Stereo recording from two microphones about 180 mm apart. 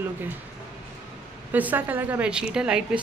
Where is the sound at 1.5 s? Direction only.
10° right (ahead or behind).